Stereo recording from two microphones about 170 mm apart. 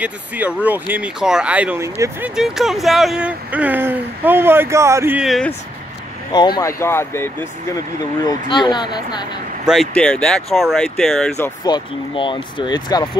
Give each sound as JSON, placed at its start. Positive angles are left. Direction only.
{"t": 0.0, "sound": "speech", "side_deg": -10}
{"t": 2.3, "sound": "speech", "side_deg": 0}
{"t": 6.3, "sound": "speech", "side_deg": 25}
{"t": 9.7, "sound": "speech", "side_deg": 5}
{"t": 11.3, "sound": "speech", "side_deg": 15}
{"t": 11.7, "sound": "speech", "side_deg": 30}